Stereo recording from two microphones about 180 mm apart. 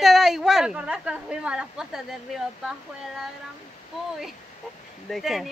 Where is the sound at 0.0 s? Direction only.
Centre (ahead or behind).